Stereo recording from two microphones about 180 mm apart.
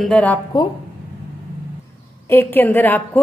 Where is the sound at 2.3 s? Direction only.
15° left (ahead or behind).